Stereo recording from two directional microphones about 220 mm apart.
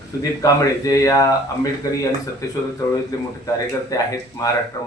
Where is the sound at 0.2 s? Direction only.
15° left (ahead or behind).